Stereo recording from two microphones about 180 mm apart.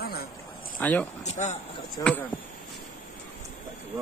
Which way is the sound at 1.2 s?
40° left (ahead or behind).